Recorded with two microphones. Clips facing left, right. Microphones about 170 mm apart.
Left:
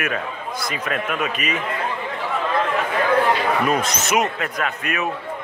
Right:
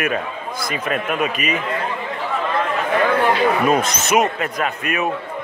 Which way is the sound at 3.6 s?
25° right (ahead or behind).